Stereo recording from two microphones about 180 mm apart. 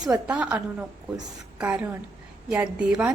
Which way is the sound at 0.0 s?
5° right (ahead or behind).